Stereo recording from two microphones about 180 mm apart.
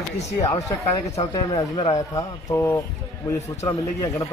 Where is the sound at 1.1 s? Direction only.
30° left (ahead or behind).